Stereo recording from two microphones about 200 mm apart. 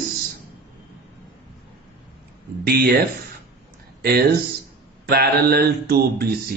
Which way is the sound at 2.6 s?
50° right (ahead or behind).